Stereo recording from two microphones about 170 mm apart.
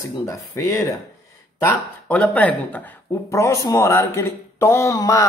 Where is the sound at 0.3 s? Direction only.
20° left (ahead or behind).